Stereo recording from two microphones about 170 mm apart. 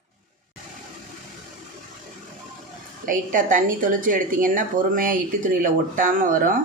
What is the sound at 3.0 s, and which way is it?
A woman's voice, 50° right (ahead or behind).